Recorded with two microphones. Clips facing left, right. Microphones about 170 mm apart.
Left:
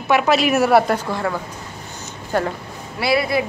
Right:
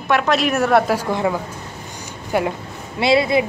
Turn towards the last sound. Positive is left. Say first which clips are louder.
# right 3 dB
turn(degrees=-20)  # may be behind; listen again after turning